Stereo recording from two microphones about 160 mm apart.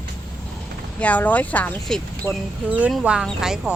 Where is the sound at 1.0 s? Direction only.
10° left (ahead or behind).